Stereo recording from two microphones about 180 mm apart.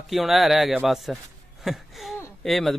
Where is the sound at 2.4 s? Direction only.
Centre (ahead or behind).